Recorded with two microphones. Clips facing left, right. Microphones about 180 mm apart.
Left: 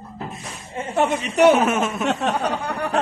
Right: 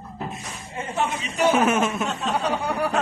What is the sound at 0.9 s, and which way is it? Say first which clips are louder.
Speech: left 6 dB; 65° left (ahead or behind).